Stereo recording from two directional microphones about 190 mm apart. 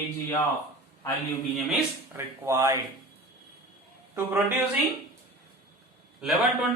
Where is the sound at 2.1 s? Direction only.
15° right (ahead or behind).